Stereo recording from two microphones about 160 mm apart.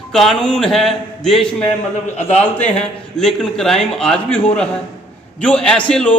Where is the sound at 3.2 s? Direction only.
5° left (ahead or behind).